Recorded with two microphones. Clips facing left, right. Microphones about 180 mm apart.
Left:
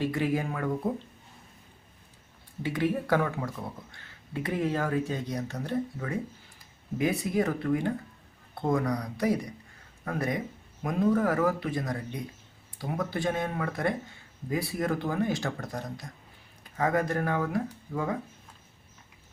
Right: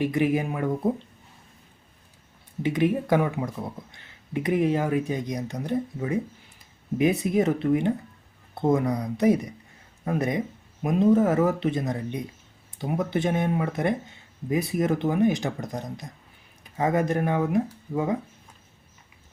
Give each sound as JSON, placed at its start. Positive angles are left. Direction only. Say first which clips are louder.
{"t": 0.0, "sound": "speech", "louder": "right 5 dB", "side_deg": -15}
{"t": 2.6, "sound": "speech", "louder": "right 4 dB", "side_deg": -20}